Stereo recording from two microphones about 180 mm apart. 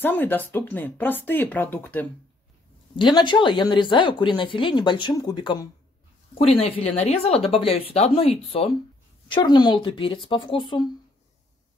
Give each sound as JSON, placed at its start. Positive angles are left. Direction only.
{"t": 0.0, "sound": "speech", "side_deg": 10}
{"t": 3.0, "sound": "speech", "side_deg": 25}
{"t": 9.3, "sound": "speech", "side_deg": 25}